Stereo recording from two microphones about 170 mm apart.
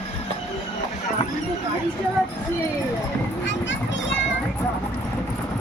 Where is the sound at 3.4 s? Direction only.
90° left.